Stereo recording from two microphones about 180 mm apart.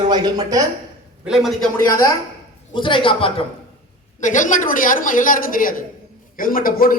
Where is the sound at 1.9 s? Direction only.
20° left (ahead or behind).